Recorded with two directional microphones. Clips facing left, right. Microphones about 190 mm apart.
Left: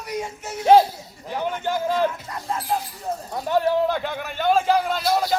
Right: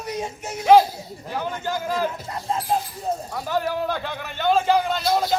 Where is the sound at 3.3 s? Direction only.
20° left (ahead or behind).